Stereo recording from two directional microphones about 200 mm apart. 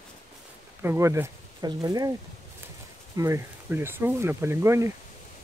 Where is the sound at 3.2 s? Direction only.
15° right (ahead or behind).